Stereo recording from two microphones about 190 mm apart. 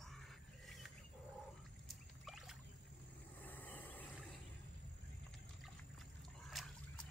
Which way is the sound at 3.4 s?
10° left (ahead or behind).